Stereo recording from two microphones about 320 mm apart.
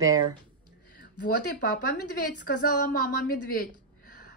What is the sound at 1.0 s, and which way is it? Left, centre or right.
A woman's voice, left.